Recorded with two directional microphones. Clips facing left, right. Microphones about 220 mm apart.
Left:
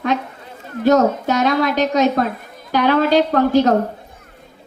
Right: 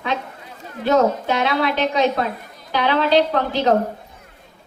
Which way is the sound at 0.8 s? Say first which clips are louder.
Left 3 dB; 45° left (ahead or behind).